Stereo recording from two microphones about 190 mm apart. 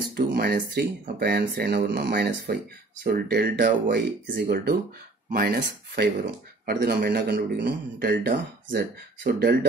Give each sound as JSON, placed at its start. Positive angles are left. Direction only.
{"t": 0.1, "sound": "a man's voice", "side_deg": -55}